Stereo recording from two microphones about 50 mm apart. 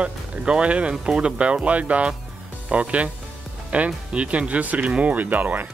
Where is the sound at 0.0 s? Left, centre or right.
Right.